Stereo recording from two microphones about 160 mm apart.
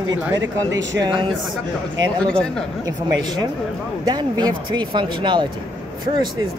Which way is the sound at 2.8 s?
25° right (ahead or behind).